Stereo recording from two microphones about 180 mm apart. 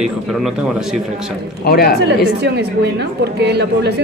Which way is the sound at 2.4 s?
70° right (ahead or behind).